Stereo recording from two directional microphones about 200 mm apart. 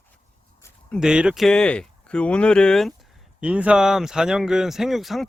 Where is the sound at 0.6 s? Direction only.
5° left (ahead or behind).